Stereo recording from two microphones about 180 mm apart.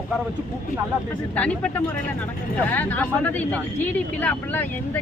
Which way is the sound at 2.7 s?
10° left (ahead or behind).